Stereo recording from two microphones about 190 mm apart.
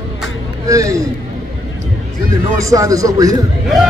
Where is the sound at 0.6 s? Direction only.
15° right (ahead or behind).